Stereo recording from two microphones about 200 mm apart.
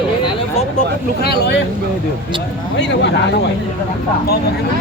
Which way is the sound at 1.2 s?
55° left (ahead or behind).